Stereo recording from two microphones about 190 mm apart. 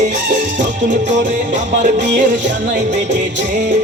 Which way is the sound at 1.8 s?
40° right (ahead or behind).